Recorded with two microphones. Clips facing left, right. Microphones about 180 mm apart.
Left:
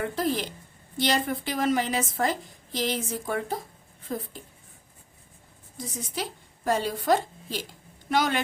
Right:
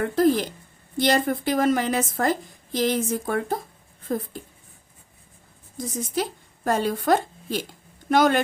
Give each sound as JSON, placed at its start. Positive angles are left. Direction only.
{"t": 0.0, "sound": "a woman's voice", "side_deg": -50}
{"t": 5.7, "sound": "a woman's voice", "side_deg": -45}